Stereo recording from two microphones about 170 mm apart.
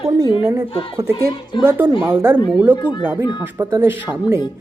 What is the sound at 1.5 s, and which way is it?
Speech, 25° left (ahead or behind).